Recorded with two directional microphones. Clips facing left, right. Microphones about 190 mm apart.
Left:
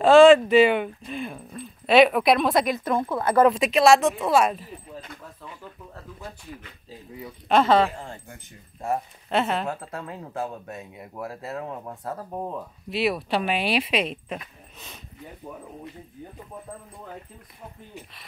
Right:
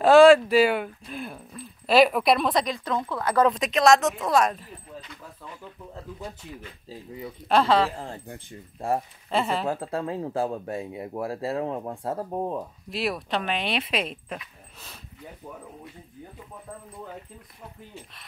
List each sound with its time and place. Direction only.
0.0 s speech: 5° right (ahead or behind)
3.1 s speech: 20° left (ahead or behind)
3.3 s speech: 10° left (ahead or behind)
7.9 s speech: 35° right (ahead or behind)
9.3 s speech: centre (ahead or behind)
9.7 s speech: 30° right (ahead or behind)
12.9 s speech: centre (ahead or behind)